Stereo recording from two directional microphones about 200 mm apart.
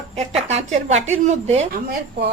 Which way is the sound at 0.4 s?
35° right (ahead or behind).